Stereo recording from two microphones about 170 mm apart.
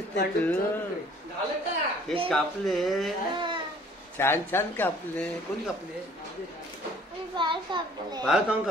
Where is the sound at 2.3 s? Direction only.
Centre (ahead or behind).